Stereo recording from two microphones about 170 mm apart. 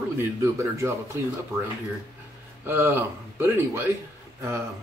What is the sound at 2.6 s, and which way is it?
Speech, 15° right (ahead or behind).